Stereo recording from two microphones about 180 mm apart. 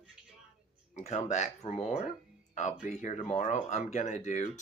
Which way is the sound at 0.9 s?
40° left (ahead or behind).